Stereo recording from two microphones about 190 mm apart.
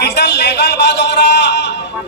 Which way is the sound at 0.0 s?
60° left (ahead or behind).